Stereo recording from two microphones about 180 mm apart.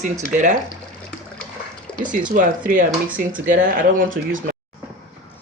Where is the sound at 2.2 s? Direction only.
45° right (ahead or behind).